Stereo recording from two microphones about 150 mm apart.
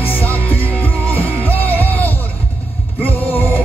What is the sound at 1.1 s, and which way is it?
Music, 10° left (ahead or behind).